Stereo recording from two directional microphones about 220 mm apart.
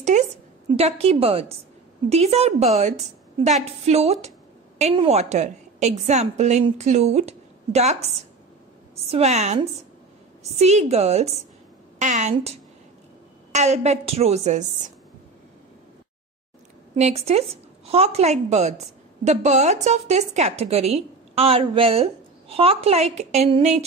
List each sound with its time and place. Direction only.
0.1 s a sound: 35° right (ahead or behind)
0.7 s a woman's voice: 25° right (ahead or behind)
9.1 s a woman's voice: 30° right (ahead or behind)
16.9 s a woman's voice: 25° right (ahead or behind)